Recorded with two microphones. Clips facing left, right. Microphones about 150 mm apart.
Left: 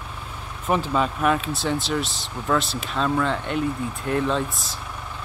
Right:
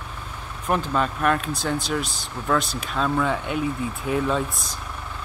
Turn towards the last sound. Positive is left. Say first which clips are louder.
# even
turn(degrees=0)  # may be behind; listen again after turning